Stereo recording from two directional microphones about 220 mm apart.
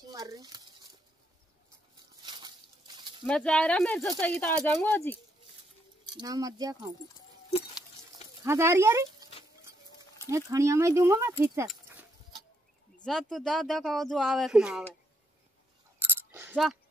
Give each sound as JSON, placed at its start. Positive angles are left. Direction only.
{"t": 0.1, "sound": "a sound", "side_deg": -15}
{"t": 2.2, "sound": "a sound", "side_deg": -20}
{"t": 3.3, "sound": "speech", "side_deg": 5}
{"t": 6.1, "sound": "speech", "side_deg": -15}
{"t": 7.5, "sound": "patter", "side_deg": 25}
{"t": 8.4, "sound": "speech", "side_deg": -10}
{"t": 10.3, "sound": "speech", "side_deg": -15}
{"t": 13.0, "sound": "speech", "side_deg": 0}
{"t": 16.0, "sound": "a sound", "side_deg": -10}